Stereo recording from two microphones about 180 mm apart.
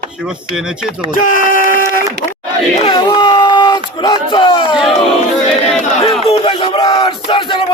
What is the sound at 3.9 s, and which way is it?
Battle cry, 25° left (ahead or behind).